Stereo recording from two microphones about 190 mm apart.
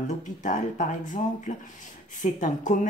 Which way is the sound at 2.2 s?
40° left (ahead or behind).